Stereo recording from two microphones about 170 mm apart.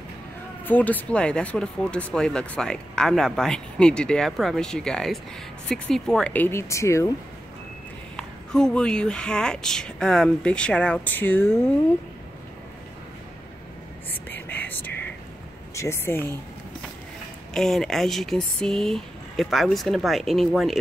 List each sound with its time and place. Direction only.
0.7 s speech: 10° left (ahead or behind)
8.2 s speech: 5° left (ahead or behind)
14.1 s whispering: 10° left (ahead or behind)
15.7 s speech: 15° left (ahead or behind)
17.6 s speech: centre (ahead or behind)